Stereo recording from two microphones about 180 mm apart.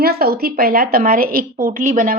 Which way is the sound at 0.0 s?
60° right (ahead or behind).